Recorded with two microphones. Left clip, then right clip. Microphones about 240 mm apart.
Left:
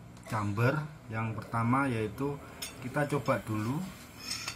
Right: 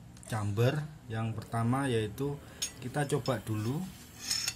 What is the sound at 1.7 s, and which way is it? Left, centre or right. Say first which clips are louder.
Speech: left 1 dB; right.